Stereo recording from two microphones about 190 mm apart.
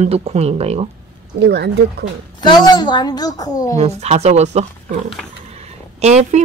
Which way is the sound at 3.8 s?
35° right (ahead or behind).